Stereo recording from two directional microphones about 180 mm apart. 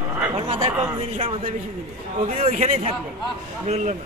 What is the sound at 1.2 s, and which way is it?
A man's voice, 30° right (ahead or behind).